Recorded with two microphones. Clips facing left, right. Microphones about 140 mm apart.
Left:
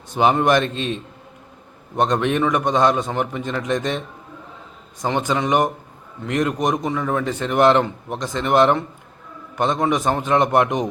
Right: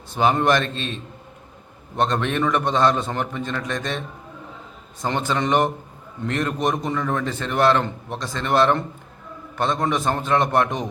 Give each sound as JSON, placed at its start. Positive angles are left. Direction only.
{"t": 0.1, "sound": "a man's voice", "side_deg": 15}
{"t": 2.0, "sound": "a man's voice", "side_deg": 15}
{"t": 5.0, "sound": "a man's voice", "side_deg": 10}